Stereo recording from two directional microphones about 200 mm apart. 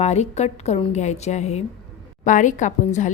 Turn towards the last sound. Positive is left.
turn(degrees=40)  # may be behind; listen again after turning